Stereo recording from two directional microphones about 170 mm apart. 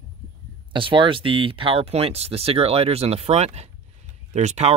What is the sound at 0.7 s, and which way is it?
Speech, 30° right (ahead or behind).